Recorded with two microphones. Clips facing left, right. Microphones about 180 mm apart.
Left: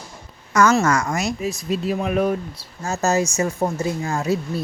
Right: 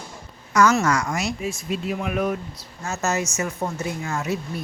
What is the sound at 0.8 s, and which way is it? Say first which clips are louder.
Speech: left 2 dB; 45° left (ahead or behind).